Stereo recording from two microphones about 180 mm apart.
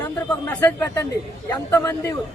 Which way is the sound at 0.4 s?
10° left (ahead or behind).